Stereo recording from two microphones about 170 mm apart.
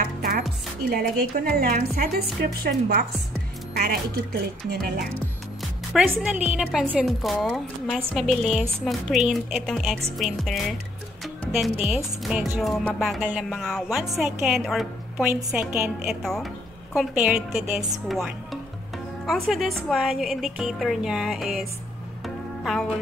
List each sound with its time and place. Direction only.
0.8 s speech: 65° right (ahead or behind)
2.5 s chopping: 65° right (ahead or behind)
3.7 s speech: 65° right (ahead or behind)
4.8 s chopping: 70° right (ahead or behind)
5.9 s speech: 5° right (ahead or behind)
11.8 s speech: 5° right (ahead or behind)
16.1 s speech: centre (ahead or behind)